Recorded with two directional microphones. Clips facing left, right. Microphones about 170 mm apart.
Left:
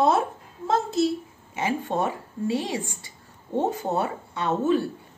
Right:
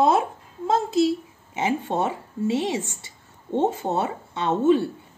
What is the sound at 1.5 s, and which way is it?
Speech, 20° right (ahead or behind).